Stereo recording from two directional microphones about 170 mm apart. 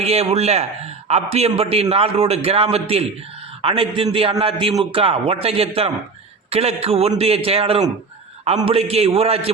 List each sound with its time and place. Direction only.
0.0 s a man's voice: 35° right (ahead or behind)